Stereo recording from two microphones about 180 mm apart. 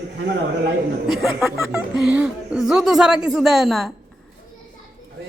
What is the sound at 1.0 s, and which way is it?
Speech, centre (ahead or behind).